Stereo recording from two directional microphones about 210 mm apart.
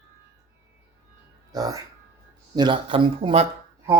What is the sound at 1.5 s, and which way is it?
Speech, 15° right (ahead or behind).